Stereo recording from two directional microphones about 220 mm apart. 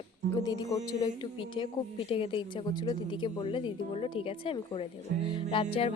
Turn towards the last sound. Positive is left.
turn(degrees=25)  # may be behind; listen again after turning